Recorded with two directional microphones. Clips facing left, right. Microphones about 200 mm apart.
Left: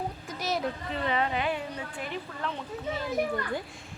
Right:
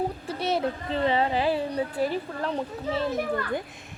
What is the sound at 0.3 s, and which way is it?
A woman's voice, 30° right (ahead or behind).